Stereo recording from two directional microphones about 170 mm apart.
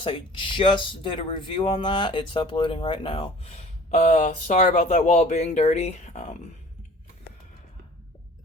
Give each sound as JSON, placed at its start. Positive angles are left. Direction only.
{"t": 0.0, "sound": "speech", "side_deg": 30}